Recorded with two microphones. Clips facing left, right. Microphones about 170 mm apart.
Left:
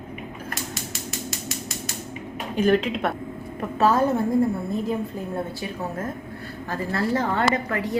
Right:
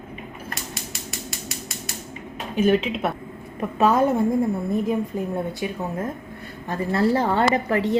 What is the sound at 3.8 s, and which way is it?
Speech, 20° right (ahead or behind).